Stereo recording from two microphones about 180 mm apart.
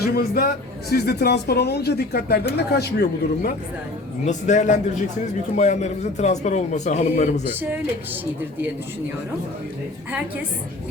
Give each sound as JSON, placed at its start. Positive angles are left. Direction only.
{"t": 0.0, "sound": "speech", "side_deg": 60}
{"t": 4.3, "sound": "a man's voice", "side_deg": 40}